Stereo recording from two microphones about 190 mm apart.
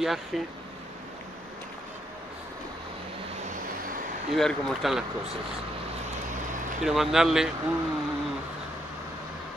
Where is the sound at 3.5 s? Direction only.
45° right (ahead or behind).